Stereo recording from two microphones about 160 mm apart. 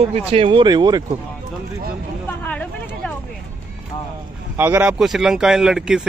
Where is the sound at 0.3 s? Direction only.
35° right (ahead or behind).